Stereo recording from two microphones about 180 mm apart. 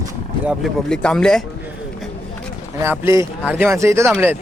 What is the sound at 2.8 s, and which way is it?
Speech, 15° right (ahead or behind).